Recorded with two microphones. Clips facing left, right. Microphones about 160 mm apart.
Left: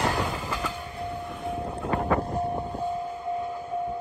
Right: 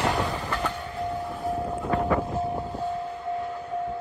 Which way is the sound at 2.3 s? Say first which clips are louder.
Even; 20° left (ahead or behind).